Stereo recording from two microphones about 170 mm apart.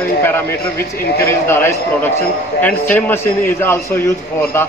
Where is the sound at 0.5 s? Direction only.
65° left (ahead or behind).